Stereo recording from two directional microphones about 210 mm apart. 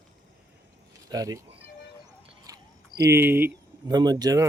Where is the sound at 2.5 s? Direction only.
15° right (ahead or behind).